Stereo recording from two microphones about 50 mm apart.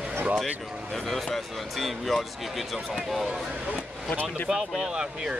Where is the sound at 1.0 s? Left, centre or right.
Centre.